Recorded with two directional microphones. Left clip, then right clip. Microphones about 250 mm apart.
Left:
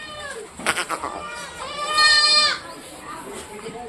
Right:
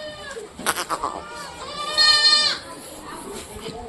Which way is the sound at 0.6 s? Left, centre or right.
Centre.